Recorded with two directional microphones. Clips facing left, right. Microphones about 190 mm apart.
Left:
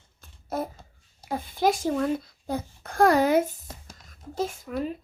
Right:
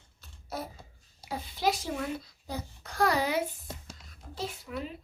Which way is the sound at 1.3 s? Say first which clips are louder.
Left 6 dB; 50° left (ahead or behind).